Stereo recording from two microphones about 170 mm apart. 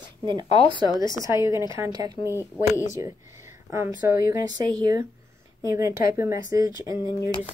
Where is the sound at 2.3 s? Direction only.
15° left (ahead or behind).